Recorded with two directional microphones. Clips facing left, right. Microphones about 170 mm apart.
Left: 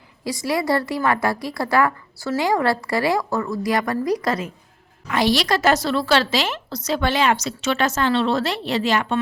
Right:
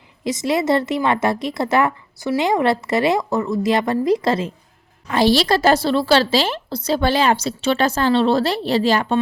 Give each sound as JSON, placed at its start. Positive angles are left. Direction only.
{"t": 0.3, "sound": "a woman's voice", "side_deg": -20}